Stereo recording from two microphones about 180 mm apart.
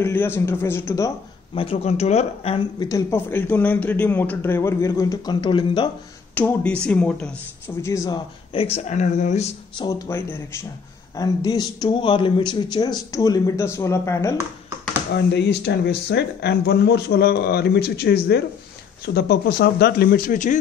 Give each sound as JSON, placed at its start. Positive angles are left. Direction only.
{"t": 0.0, "sound": "a man's voice", "side_deg": 10}
{"t": 1.5, "sound": "speech", "side_deg": 30}
{"t": 2.9, "sound": "a man's voice", "side_deg": 15}
{"t": 6.3, "sound": "a man's voice", "side_deg": 10}
{"t": 8.5, "sound": "speech", "side_deg": 35}
{"t": 9.8, "sound": "a man's voice", "side_deg": 15}
{"t": 15.1, "sound": "speech", "side_deg": 65}